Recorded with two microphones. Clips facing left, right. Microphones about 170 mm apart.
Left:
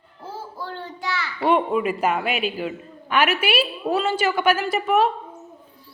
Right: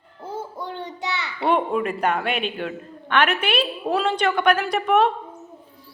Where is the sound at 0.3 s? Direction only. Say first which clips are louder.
Right 2 dB; 20° right (ahead or behind).